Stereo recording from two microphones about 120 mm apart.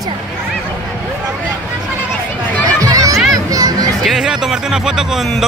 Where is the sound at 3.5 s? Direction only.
30° right (ahead or behind).